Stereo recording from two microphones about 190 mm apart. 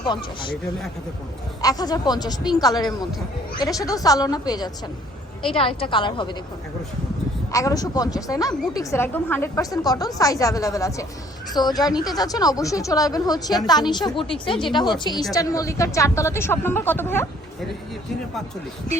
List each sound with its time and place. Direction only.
0.1 s speech: 25° left (ahead or behind)
1.6 s speech: 20° left (ahead or behind)
7.5 s a woman's voice: 20° left (ahead or behind)